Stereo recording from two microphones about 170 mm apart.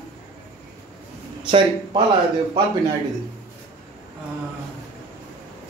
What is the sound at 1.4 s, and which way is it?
Speech, 30° right (ahead or behind).